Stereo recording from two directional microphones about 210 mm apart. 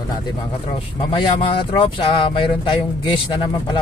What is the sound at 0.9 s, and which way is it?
Speech, 20° left (ahead or behind).